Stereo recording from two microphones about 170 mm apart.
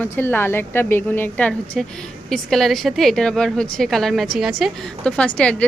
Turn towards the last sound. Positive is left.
turn(degrees=5)  # may be behind; listen again after turning